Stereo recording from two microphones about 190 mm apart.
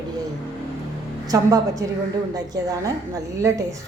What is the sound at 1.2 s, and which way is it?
A woman's voice, 20° right (ahead or behind).